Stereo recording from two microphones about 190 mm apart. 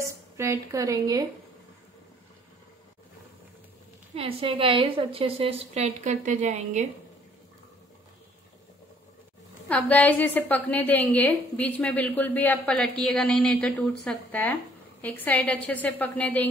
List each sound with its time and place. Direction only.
0.0 s a woman's voice: 15° right (ahead or behind)
4.1 s a woman's voice: 30° right (ahead or behind)
9.7 s a woman's voice: 10° left (ahead or behind)